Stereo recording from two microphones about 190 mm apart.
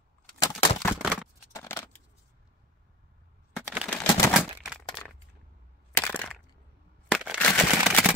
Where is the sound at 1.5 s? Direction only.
15° left (ahead or behind).